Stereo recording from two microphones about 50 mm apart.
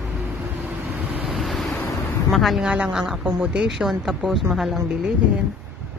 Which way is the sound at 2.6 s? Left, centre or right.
Right.